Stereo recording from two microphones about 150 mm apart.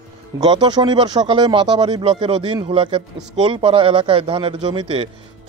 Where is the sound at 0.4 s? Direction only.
30° right (ahead or behind).